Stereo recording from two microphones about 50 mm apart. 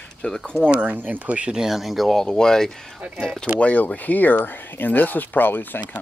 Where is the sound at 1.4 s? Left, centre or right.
Centre.